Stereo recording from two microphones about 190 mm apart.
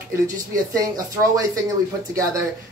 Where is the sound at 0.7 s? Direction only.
20° right (ahead or behind).